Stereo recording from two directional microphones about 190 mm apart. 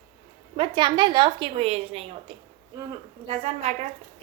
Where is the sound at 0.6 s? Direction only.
25° right (ahead or behind).